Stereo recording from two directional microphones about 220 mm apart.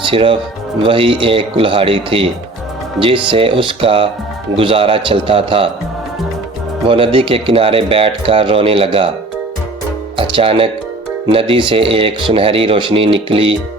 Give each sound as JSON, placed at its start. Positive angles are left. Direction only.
{"t": 0.1, "sound": "speech", "side_deg": -25}
{"t": 6.8, "sound": "speech", "side_deg": -25}
{"t": 10.2, "sound": "speech", "side_deg": -25}